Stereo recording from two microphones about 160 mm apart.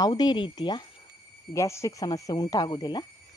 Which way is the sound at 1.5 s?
20° left (ahead or behind).